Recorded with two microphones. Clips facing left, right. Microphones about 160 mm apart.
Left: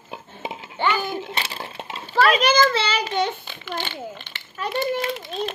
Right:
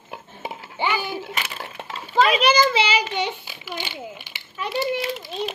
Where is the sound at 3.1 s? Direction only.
10° right (ahead or behind).